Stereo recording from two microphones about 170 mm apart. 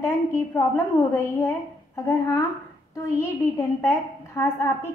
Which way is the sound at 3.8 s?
15° left (ahead or behind).